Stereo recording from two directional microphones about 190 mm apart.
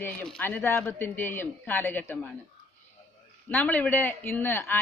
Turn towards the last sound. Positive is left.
turn(degrees=10)  # may be behind; listen again after turning